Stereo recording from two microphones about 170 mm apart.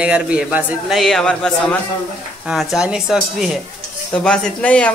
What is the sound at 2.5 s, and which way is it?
Speech, 5° right (ahead or behind).